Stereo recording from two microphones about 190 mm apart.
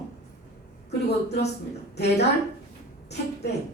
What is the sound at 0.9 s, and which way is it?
A woman's voice, 60° left (ahead or behind).